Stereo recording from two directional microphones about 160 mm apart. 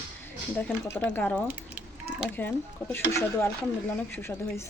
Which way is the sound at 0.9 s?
15° left (ahead or behind).